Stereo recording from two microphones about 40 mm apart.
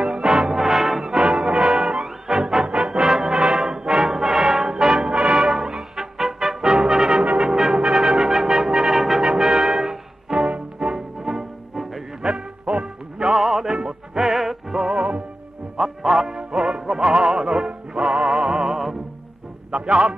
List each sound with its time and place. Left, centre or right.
0.0 s music: right
0.6 s music: centre
1.5 s music: right
3.0 s brass instrument: centre
5.8 s brass instrument: centre
9.2 s music: right
13.4 s music: centre
14.8 s music: right
15.8 s music: centre